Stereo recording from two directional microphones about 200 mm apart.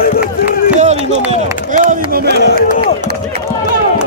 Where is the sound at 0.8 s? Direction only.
35° right (ahead or behind).